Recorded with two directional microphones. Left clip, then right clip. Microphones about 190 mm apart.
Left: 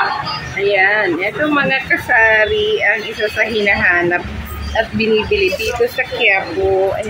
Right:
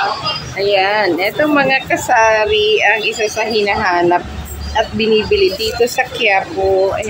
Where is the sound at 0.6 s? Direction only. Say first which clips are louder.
Even; 10° right (ahead or behind).